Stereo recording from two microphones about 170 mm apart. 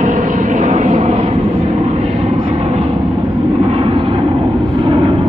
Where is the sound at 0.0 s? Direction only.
45° right (ahead or behind).